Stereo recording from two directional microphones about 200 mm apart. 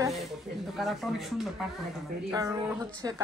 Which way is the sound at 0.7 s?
Centre (ahead or behind).